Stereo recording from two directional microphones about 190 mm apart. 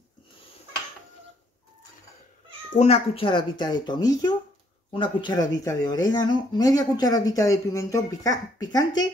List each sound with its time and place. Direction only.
2.7 s speech: 35° left (ahead or behind)